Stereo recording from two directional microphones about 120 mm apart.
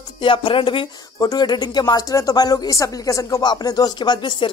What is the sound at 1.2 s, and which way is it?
Speech, 35° left (ahead or behind).